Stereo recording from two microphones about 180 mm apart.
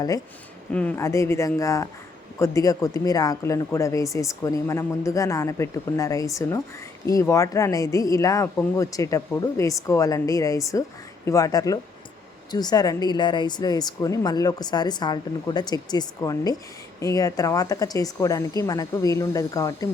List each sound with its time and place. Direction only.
0.7 s a woman's voice: 5° left (ahead or behind)